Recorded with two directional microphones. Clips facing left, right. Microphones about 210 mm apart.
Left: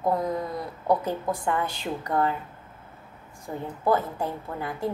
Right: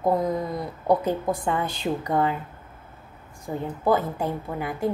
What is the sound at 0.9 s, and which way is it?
A woman's voice, 20° right (ahead or behind).